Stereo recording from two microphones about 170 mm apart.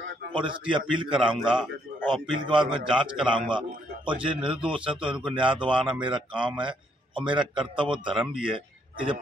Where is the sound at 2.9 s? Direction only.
5° right (ahead or behind).